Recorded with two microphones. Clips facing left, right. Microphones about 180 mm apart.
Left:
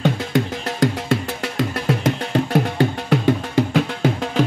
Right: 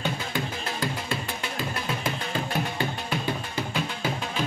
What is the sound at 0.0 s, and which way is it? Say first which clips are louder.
Music: left 10 dB; 80° left.